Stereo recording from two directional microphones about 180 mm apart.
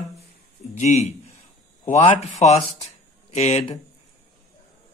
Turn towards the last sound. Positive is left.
turn(degrees=40)  # may be behind; listen again after turning